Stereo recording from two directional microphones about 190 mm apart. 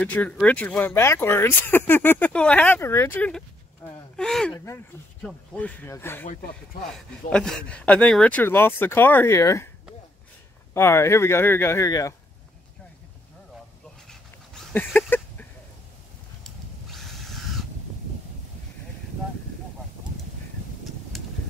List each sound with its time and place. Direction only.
0.0 s speech: 10° left (ahead or behind)
6.2 s speech: 50° left (ahead or behind)
6.9 s speech: 5° left (ahead or behind)
10.7 s speech: 15° left (ahead or behind)
14.0 s dog: 5° left (ahead or behind)
16.4 s a sound: centre (ahead or behind)
21.1 s vehicle: centre (ahead or behind)